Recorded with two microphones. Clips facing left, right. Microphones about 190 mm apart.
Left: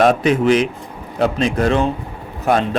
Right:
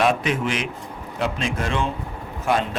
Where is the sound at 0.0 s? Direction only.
40° left (ahead or behind).